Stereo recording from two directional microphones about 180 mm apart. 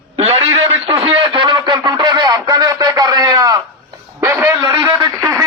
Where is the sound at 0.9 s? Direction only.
30° right (ahead or behind).